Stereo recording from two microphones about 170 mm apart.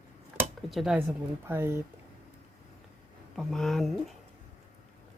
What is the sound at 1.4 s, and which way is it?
Speech, 15° right (ahead or behind).